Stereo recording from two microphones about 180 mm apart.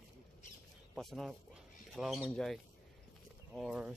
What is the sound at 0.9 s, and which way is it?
Speech, centre (ahead or behind).